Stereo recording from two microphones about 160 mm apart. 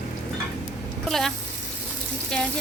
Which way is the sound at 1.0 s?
Centre (ahead or behind).